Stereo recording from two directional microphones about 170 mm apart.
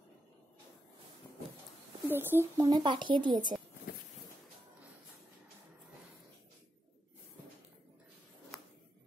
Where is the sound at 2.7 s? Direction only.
30° right (ahead or behind).